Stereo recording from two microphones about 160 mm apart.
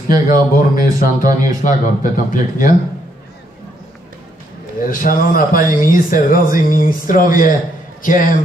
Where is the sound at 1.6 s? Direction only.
50° left (ahead or behind).